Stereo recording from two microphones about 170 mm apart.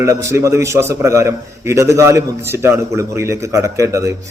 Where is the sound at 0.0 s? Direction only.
15° right (ahead or behind).